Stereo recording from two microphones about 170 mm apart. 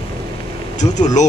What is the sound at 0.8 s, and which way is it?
Speech, 30° left (ahead or behind).